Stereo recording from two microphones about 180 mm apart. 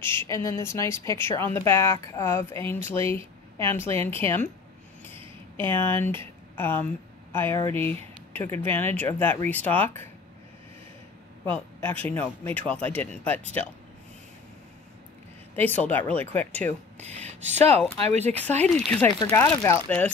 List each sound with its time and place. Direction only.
0.0 s a woman's voice: 15° left (ahead or behind)
5.1 s a sound: 30° right (ahead or behind)
5.7 s a woman's voice: 10° left (ahead or behind)
12.1 s a woman's voice: 10° left (ahead or behind)
15.5 s a woman's voice: 10° left (ahead or behind)
17.0 s speech: 35° right (ahead or behind)
18.6 s a woman's voice: 5° left (ahead or behind)